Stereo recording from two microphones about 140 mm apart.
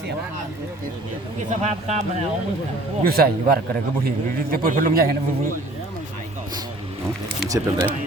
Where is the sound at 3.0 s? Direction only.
90° right.